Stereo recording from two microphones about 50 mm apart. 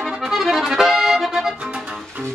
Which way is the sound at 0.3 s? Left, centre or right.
Centre.